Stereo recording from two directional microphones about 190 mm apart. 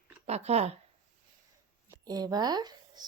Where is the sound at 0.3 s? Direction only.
35° right (ahead or behind).